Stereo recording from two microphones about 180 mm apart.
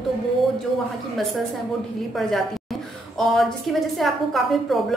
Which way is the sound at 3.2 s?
Centre (ahead or behind).